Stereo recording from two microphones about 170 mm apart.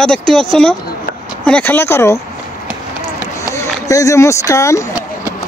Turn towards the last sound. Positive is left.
turn(degrees=20)  # may be behind; listen again after turning